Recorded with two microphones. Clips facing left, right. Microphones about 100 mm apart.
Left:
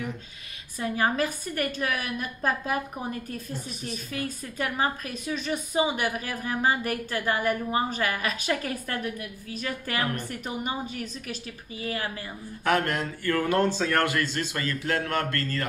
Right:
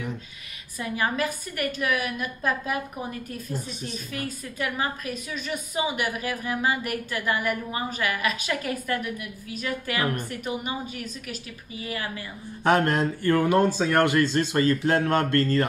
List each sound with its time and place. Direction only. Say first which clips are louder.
0.7 s a woman's voice: left 1 dB; 35° left (ahead or behind)
4.6 s a woman's voice: left 1 dB; 35° left (ahead or behind)
12.6 s a man's voice: right 4 dB; 25° right (ahead or behind)
13.5 s a man's voice: right 3 dB; 15° right (ahead or behind)